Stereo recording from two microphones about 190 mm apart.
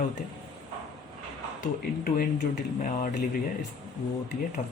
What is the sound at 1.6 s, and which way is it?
Speech, 45° left (ahead or behind).